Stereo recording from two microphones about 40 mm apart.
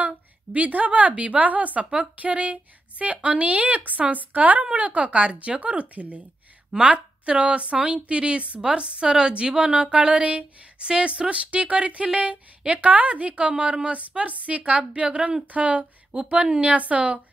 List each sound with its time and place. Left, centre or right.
0.6 s a woman's voice: right
16.1 s a woman's voice: right